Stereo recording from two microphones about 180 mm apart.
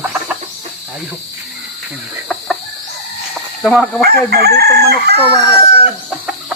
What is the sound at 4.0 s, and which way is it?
Chicken, 60° right (ahead or behind).